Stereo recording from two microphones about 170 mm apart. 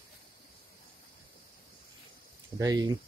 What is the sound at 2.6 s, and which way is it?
Speech, 20° right (ahead or behind).